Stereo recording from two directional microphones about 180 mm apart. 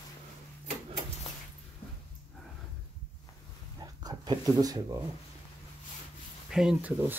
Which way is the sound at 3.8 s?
20° right (ahead or behind).